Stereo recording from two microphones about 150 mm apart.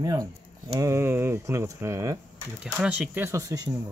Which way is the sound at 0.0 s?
25° right (ahead or behind).